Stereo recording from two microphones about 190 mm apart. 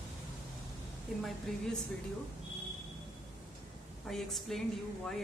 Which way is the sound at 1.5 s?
5° left (ahead or behind).